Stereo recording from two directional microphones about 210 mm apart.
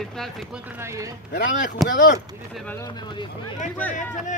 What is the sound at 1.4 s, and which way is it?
Speech, 40° left (ahead or behind).